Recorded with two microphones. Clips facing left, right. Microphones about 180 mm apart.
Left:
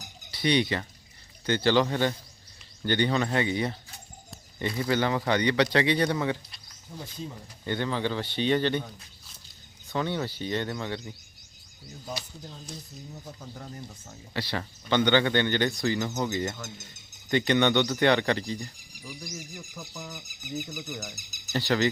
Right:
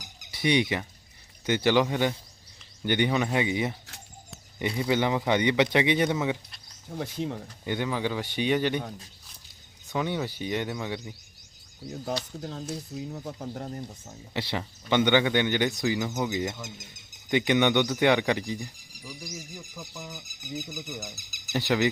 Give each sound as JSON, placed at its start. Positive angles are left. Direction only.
{"t": 0.3, "sound": "speech", "side_deg": -20}
{"t": 6.1, "sound": "speech", "side_deg": -5}
{"t": 7.0, "sound": "speech", "side_deg": -75}
{"t": 7.6, "sound": "speech", "side_deg": -10}
{"t": 9.9, "sound": "speech", "side_deg": -15}
{"t": 12.4, "sound": "speech", "side_deg": -70}
{"t": 13.8, "sound": "speech", "side_deg": -20}
{"t": 19.4, "sound": "speech", "side_deg": 0}
{"t": 21.5, "sound": "speech", "side_deg": -15}